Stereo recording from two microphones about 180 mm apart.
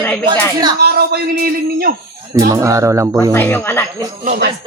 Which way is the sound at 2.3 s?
20° right (ahead or behind).